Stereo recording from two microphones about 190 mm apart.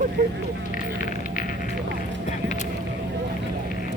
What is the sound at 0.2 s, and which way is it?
Speech, 55° right (ahead or behind).